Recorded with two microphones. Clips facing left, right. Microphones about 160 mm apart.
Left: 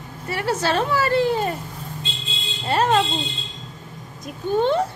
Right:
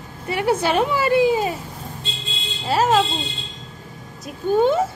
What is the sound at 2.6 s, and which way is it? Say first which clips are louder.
Speech: right 1 dB; 5° right (ahead or behind).